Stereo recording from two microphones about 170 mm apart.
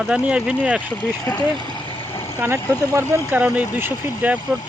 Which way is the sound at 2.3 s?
15° right (ahead or behind).